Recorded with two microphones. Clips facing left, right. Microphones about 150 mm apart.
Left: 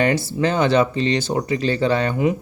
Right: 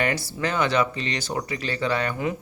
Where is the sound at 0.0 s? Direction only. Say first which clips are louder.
Left 7 dB; 25° left (ahead or behind).